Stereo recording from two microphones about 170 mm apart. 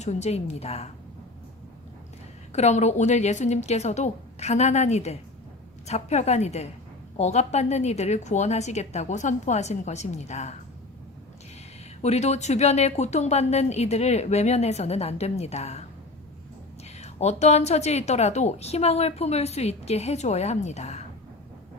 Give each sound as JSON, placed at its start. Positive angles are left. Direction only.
{"t": 0.0, "sound": "a woman's voice", "side_deg": 40}
{"t": 2.5, "sound": "a woman's voice", "side_deg": 40}
{"t": 12.0, "sound": "a woman's voice", "side_deg": 40}
{"t": 17.0, "sound": "a woman's voice", "side_deg": 40}